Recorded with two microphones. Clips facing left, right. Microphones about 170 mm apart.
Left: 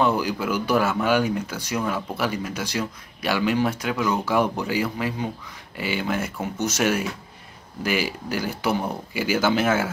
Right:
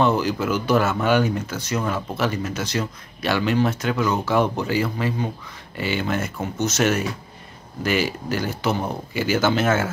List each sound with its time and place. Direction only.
0.0 s speech: 10° left (ahead or behind)